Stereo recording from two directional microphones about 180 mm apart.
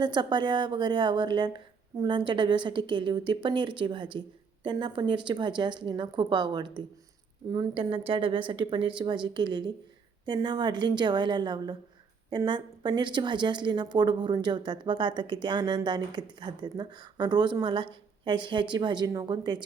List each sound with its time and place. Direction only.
0.0 s a woman's voice: 25° right (ahead or behind)